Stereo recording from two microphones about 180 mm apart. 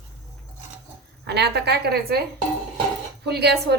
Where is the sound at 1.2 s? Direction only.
65° right (ahead or behind).